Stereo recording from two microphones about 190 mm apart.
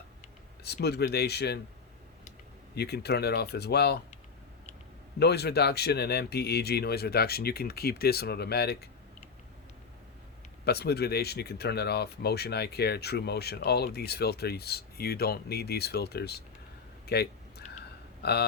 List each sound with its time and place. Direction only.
0.6 s speech: 60° left (ahead or behind)
2.7 s speech: 60° left (ahead or behind)
5.2 s speech: 60° left (ahead or behind)
10.7 s speech: 60° left (ahead or behind)